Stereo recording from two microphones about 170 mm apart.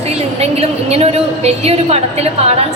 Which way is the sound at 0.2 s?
35° right (ahead or behind).